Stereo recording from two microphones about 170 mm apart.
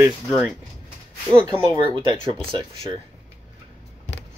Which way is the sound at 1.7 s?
30° right (ahead or behind).